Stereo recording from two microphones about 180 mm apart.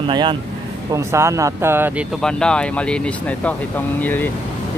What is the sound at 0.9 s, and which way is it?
Speech, 15° right (ahead or behind).